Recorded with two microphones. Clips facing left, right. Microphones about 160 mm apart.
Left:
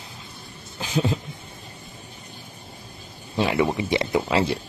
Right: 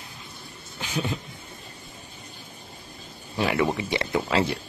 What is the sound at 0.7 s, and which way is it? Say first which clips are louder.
Speech: left 5 dB; 30° left (ahead or behind).